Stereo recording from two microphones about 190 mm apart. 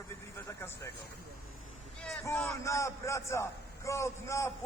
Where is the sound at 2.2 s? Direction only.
15° left (ahead or behind).